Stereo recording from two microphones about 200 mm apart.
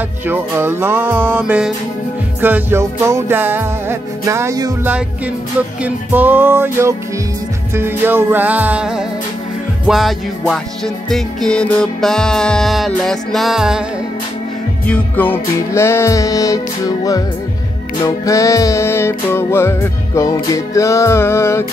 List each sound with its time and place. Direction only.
0.3 s music: 10° right (ahead or behind)
14.9 s music: 10° left (ahead or behind)